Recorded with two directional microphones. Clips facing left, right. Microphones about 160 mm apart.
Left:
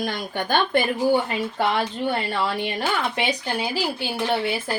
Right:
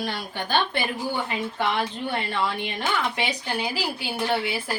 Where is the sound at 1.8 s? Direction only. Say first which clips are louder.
Left 3 dB; 35° left (ahead or behind).